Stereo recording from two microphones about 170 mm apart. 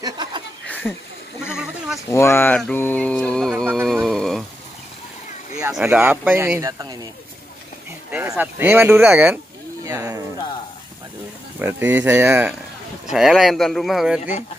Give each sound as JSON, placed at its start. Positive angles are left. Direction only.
{"t": 0.0, "sound": "chuckle", "side_deg": -25}
{"t": 1.5, "sound": "sheep", "side_deg": -5}
{"t": 2.0, "sound": "speech", "side_deg": 15}
{"t": 3.7, "sound": "a sound", "side_deg": 0}
{"t": 5.8, "sound": "speech", "side_deg": -10}
{"t": 8.1, "sound": "speech", "side_deg": -10}
{"t": 11.6, "sound": "speech", "side_deg": -10}